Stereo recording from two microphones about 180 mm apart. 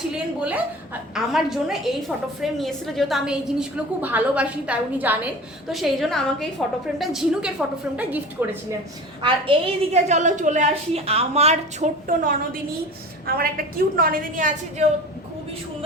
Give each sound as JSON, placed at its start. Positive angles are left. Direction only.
{"t": 0.3, "sound": "a woman's voice", "side_deg": -5}
{"t": 9.2, "sound": "a woman's voice", "side_deg": -35}
{"t": 13.2, "sound": "a woman's voice", "side_deg": -55}